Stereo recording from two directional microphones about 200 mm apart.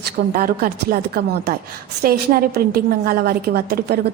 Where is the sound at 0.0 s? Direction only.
45° right (ahead or behind).